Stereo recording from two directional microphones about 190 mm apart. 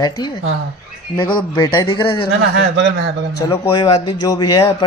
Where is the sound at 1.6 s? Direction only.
25° left (ahead or behind).